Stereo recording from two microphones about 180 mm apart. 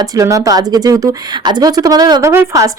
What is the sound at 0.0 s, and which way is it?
A woman's voice, 20° right (ahead or behind).